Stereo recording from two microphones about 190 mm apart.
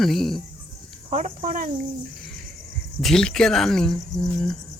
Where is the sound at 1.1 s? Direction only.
35° right (ahead or behind).